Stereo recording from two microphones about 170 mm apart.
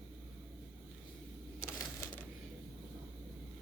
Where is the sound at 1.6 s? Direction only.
20° left (ahead or behind).